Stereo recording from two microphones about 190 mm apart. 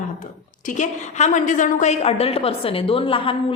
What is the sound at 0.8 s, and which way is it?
A woman's voice, 40° left (ahead or behind).